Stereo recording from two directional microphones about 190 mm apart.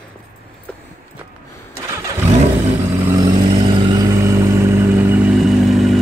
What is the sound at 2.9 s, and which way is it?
Vehicle, 20° right (ahead or behind).